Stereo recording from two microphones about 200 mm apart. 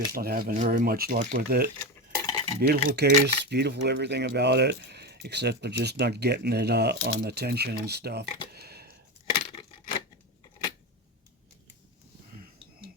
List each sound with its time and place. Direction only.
0.1 s speech: 50° right (ahead or behind)
2.1 s cutlery: 20° left (ahead or behind)
2.6 s speech: 50° right (ahead or behind)
8.5 s a sound: 55° right (ahead or behind)
9.3 s coin: 25° left (ahead or behind)